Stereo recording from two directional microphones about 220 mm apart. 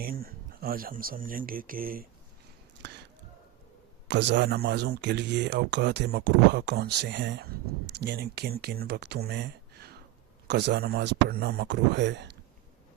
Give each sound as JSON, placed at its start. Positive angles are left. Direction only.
{"t": 0.0, "sound": "speech", "side_deg": -40}
{"t": 4.1, "sound": "speech", "side_deg": -50}